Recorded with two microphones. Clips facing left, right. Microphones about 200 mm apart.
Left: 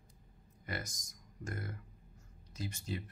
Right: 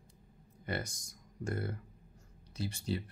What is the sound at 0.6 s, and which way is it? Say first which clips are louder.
Speech: right 5 dB; 30° right (ahead or behind).